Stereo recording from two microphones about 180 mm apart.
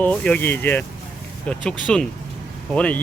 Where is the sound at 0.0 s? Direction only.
10° left (ahead or behind).